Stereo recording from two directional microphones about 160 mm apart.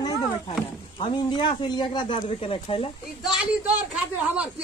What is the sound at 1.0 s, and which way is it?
Speech, 30° left (ahead or behind).